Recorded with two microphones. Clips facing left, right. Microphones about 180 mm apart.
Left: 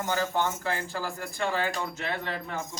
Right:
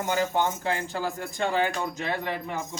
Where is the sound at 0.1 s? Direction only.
15° right (ahead or behind).